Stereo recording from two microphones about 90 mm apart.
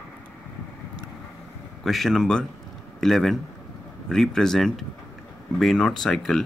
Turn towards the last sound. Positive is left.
turn(degrees=5)  # may be behind; listen again after turning